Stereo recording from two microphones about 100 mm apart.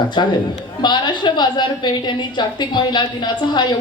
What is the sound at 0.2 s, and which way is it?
A woman's voice, 50° left (ahead or behind).